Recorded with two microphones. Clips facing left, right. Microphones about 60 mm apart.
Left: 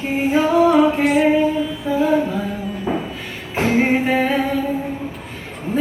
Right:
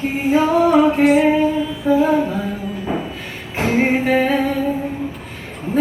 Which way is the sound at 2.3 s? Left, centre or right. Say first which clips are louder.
Right 1 dB; right.